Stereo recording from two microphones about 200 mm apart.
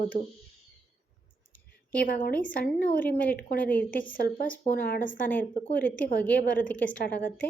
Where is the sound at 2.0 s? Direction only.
45° left (ahead or behind).